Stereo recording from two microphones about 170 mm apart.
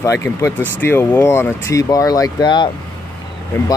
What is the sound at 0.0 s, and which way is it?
Speech, 15° left (ahead or behind).